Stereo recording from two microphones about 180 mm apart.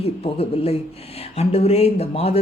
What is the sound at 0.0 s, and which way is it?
Speech, 35° left (ahead or behind).